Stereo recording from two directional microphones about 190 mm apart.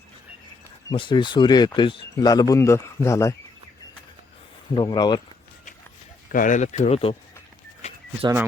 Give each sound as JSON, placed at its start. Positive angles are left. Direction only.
{"t": 0.9, "sound": "speech", "side_deg": 25}
{"t": 4.7, "sound": "speech", "side_deg": 20}
{"t": 6.3, "sound": "speech", "side_deg": 45}